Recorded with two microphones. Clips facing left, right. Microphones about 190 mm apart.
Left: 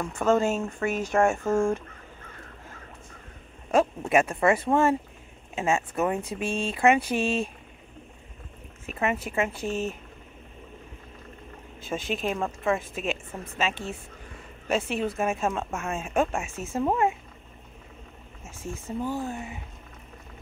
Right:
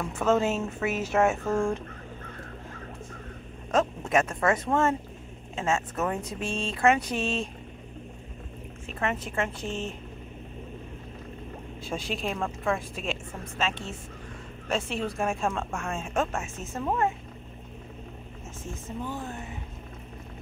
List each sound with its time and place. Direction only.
0.0 s a woman's voice: 5° right (ahead or behind)
3.7 s speech: 10° left (ahead or behind)
8.8 s speech: 10° left (ahead or behind)
11.8 s a woman's voice: centre (ahead or behind)
19.0 s speech: 10° left (ahead or behind)